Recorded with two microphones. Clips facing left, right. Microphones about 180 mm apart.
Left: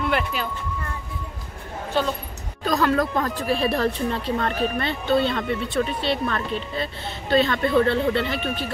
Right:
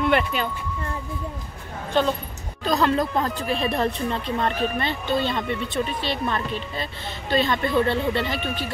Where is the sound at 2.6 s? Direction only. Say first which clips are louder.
Even; 30° right (ahead or behind).